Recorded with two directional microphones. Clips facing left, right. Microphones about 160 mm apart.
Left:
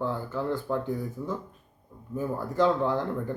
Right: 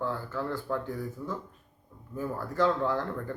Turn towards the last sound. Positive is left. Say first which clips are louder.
# left 3 dB
turn(degrees=20)  # may be behind; listen again after turning